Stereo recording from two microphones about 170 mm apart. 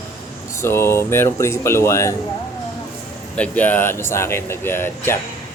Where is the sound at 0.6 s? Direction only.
15° left (ahead or behind).